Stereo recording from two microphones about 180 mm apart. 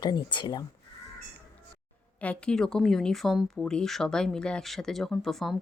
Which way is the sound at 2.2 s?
5° left (ahead or behind).